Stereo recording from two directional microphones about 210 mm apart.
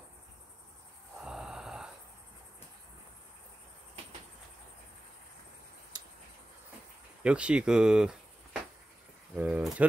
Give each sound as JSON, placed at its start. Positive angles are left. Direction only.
{"t": 1.2, "sound": "a sound", "side_deg": -5}
{"t": 7.2, "sound": "speech", "side_deg": -5}
{"t": 9.3, "sound": "speech", "side_deg": -5}